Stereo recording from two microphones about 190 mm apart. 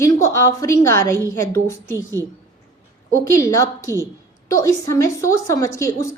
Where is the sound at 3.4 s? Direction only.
15° left (ahead or behind).